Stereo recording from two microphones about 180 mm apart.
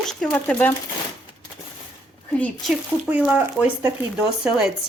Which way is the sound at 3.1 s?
10° right (ahead or behind).